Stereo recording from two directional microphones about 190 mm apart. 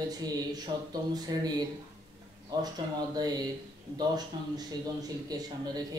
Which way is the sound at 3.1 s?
20° right (ahead or behind).